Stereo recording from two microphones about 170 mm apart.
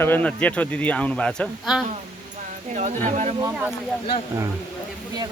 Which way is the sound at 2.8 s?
45° right (ahead or behind).